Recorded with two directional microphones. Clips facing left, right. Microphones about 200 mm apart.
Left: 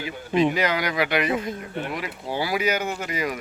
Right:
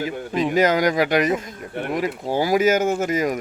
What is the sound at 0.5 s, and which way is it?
Speech, 45° right (ahead or behind).